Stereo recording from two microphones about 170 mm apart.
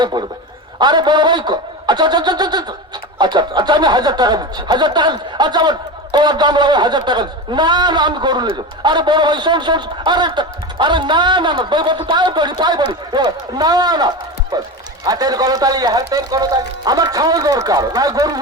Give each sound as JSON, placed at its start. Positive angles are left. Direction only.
{"t": 0.0, "sound": "speech", "side_deg": -25}